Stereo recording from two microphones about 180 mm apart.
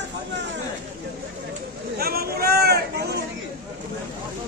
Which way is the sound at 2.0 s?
60° right (ahead or behind).